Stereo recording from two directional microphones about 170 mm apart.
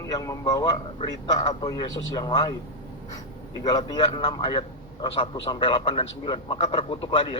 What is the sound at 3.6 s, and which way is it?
A man's voice, 25° left (ahead or behind).